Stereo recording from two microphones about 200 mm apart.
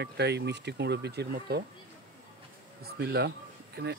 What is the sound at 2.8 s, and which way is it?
Speech, 55° right (ahead or behind).